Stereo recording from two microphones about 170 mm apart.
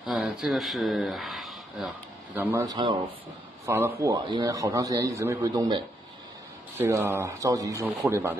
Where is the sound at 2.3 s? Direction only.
15° right (ahead or behind).